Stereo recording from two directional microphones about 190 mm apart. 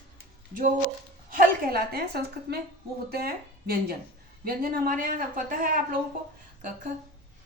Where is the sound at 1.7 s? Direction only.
55° right (ahead or behind).